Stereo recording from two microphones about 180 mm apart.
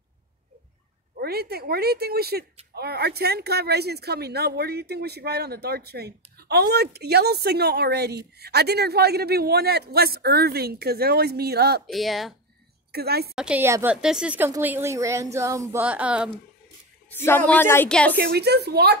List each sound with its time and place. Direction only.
1.2 s speech: 60° right (ahead or behind)
11.9 s speech: centre (ahead or behind)
12.9 s speech: 60° right (ahead or behind)
13.3 s speech: 5° right (ahead or behind)
17.1 s speech: 15° left (ahead or behind)
18.1 s speech: 65° right (ahead or behind)